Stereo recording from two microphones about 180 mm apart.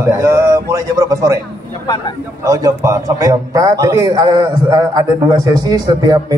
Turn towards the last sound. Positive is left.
turn(degrees=-20)  # may be behind; listen again after turning